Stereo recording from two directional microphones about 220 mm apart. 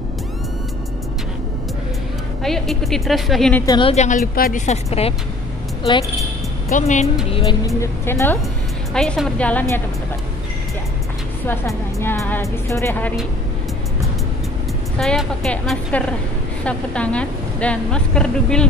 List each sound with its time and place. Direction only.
2.4 s a woman's voice: centre (ahead or behind)
3.6 s a woman's voice: 20° left (ahead or behind)
6.7 s a woman's voice: 35° left (ahead or behind)
7.2 s a woman's voice: 20° left (ahead or behind); by 9.8 s 5° left (ahead or behind)
11.4 s speech: 10° left (ahead or behind)
15.0 s a woman's voice: centre (ahead or behind)